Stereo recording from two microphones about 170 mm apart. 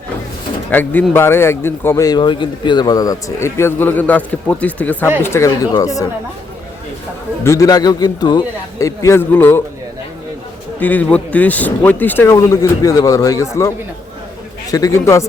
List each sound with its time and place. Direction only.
0.7 s a man's voice: 10° left (ahead or behind)
7.4 s a man's voice: 20° left (ahead or behind)
10.8 s a man's voice: 10° left (ahead or behind)